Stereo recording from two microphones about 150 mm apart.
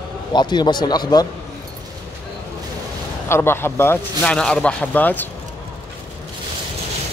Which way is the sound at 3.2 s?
15° left (ahead or behind).